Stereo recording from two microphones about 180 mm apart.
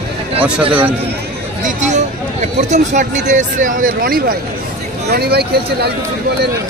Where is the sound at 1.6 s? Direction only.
40° right (ahead or behind).